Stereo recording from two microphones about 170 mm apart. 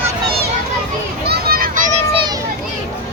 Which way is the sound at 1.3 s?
60° right (ahead or behind).